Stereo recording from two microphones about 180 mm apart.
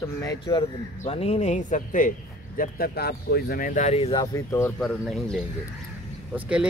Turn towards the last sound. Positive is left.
turn(degrees=-5)  # may be behind; listen again after turning